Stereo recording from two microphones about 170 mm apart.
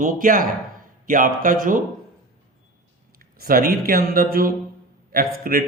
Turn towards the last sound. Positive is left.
turn(degrees=-60)  # may be behind; listen again after turning